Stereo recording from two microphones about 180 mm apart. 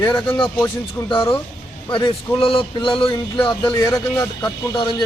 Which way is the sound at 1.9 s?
25° left (ahead or behind).